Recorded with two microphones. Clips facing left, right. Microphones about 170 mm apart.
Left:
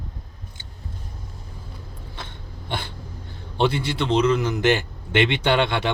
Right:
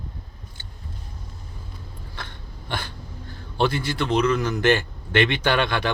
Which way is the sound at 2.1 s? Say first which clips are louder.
Even; 20° left (ahead or behind).